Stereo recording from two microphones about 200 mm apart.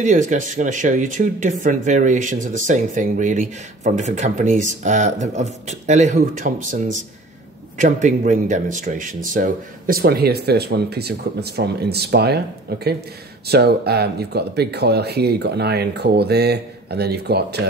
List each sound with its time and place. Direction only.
0.0 s speech: 40° right (ahead or behind)